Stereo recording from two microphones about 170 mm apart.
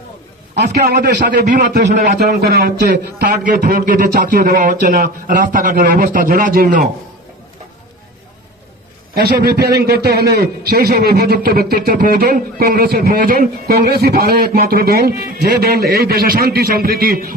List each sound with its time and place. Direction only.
0.5 s a man's voice: 70° right (ahead or behind); by 6.8 s 55° right (ahead or behind)
9.1 s a man's voice: 65° right (ahead or behind)